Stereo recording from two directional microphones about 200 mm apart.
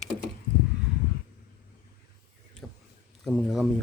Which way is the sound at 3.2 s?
Centre (ahead or behind).